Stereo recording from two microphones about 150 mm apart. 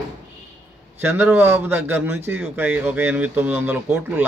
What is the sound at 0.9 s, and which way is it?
Speech, 15° right (ahead or behind).